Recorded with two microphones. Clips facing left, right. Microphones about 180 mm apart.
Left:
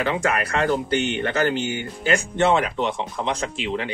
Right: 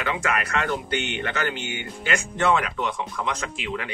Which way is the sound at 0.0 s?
30° left (ahead or behind).